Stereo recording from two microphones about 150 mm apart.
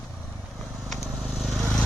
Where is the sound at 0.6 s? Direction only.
Centre (ahead or behind).